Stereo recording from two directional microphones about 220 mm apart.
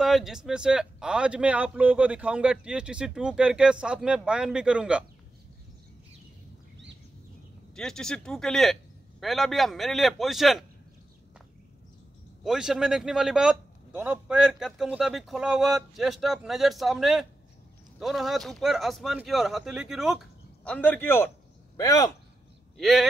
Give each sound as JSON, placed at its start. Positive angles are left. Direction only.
{"t": 0.0, "sound": "speech", "side_deg": 0}
{"t": 7.7, "sound": "speech", "side_deg": 5}
{"t": 12.4, "sound": "speech", "side_deg": 0}
{"t": 22.8, "sound": "speech", "side_deg": 0}